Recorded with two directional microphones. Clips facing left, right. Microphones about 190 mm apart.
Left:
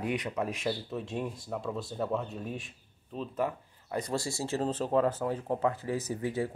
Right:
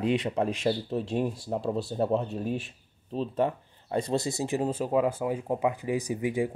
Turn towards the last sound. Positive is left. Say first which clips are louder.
# right 4 dB
turn(degrees=-15)  # may be behind; listen again after turning